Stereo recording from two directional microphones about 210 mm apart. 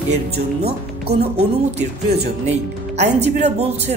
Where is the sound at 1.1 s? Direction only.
50° right (ahead or behind).